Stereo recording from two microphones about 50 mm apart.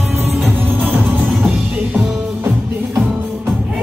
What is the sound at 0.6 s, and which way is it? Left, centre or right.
Music, right.